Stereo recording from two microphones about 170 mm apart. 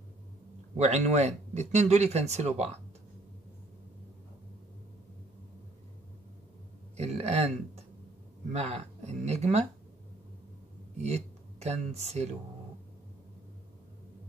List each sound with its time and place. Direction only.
0.7 s speech: 40° right (ahead or behind)
7.0 s speech: 40° right (ahead or behind)
11.0 s speech: 40° right (ahead or behind)